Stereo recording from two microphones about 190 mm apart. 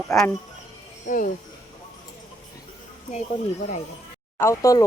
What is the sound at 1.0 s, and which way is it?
Speech, 45° left (ahead or behind).